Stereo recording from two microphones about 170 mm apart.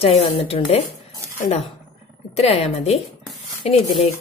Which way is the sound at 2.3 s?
35° left (ahead or behind).